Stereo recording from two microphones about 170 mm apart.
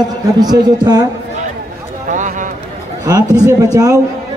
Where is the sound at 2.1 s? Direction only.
50° right (ahead or behind).